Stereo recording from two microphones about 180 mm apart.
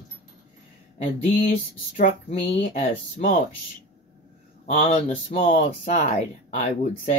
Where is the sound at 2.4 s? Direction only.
40° left (ahead or behind).